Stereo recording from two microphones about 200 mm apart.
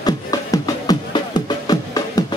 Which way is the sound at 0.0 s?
20° left (ahead or behind).